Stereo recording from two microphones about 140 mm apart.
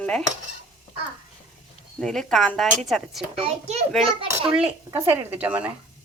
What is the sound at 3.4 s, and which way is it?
Speech, 50° right (ahead or behind).